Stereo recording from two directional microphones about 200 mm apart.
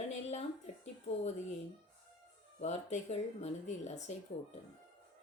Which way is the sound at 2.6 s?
35° left (ahead or behind).